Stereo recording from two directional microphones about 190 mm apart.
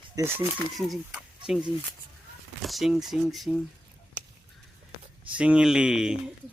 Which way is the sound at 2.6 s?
Centre (ahead or behind).